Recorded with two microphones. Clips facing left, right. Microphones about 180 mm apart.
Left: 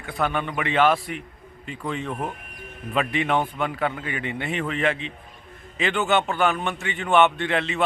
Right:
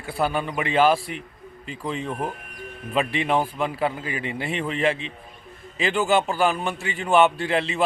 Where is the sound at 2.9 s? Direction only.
30° right (ahead or behind).